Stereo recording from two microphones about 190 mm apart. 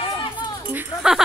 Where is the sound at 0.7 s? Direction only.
5° right (ahead or behind).